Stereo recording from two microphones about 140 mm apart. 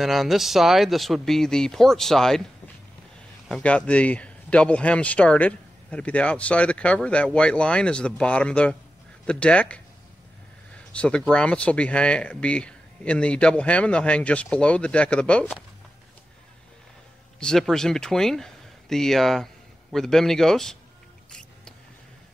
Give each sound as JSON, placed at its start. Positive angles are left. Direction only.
{"t": 0.0, "sound": "speech", "side_deg": 0}
{"t": 3.4, "sound": "a man's voice", "side_deg": 5}
{"t": 10.9, "sound": "a man's voice", "side_deg": 10}
{"t": 17.4, "sound": "speech", "side_deg": 5}
{"t": 21.3, "sound": "music", "side_deg": 5}